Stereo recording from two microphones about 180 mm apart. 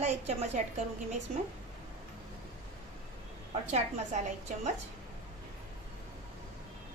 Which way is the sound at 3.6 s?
40° right (ahead or behind).